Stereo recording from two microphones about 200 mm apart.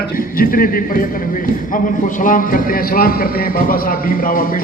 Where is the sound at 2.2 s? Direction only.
45° left (ahead or behind).